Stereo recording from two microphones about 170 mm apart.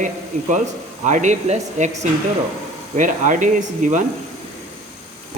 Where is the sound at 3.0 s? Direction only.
50° right (ahead or behind).